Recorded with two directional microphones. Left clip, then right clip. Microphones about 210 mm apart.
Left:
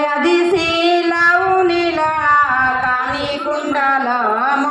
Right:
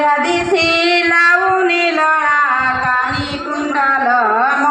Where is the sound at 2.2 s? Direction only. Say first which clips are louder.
Even; 15° right (ahead or behind).